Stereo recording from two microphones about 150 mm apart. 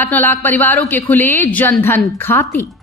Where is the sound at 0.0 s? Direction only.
15° left (ahead or behind).